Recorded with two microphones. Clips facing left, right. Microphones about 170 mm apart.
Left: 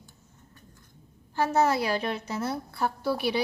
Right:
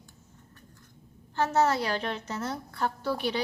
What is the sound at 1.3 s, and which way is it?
A woman's voice, 10° left (ahead or behind).